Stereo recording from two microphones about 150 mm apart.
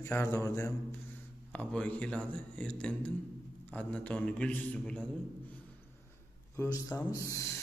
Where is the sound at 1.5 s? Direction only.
10° left (ahead or behind).